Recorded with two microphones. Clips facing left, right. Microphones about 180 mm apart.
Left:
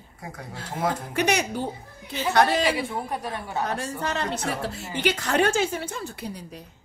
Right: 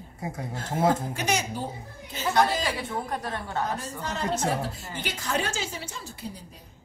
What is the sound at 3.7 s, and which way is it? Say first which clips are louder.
A woman's voice: left 4 dB; 75° left (ahead or behind).